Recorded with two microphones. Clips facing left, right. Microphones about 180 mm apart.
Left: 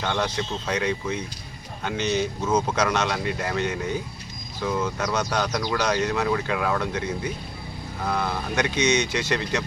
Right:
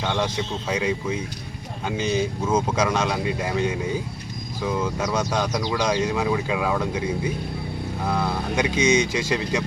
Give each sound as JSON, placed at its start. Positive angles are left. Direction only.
{"t": 0.0, "sound": "speech", "side_deg": -10}
{"t": 8.0, "sound": "speech", "side_deg": -10}
{"t": 8.8, "sound": "speech", "side_deg": -90}
{"t": 9.3, "sound": "speech", "side_deg": -10}